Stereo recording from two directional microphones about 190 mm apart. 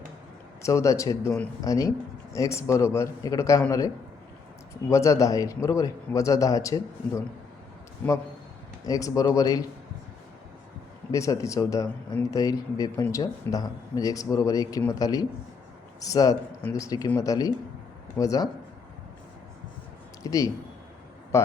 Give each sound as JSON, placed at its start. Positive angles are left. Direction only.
{"t": 0.6, "sound": "speech", "side_deg": 15}
{"t": 8.8, "sound": "speech", "side_deg": 20}
{"t": 11.1, "sound": "speech", "side_deg": 15}
{"t": 20.2, "sound": "speech", "side_deg": 20}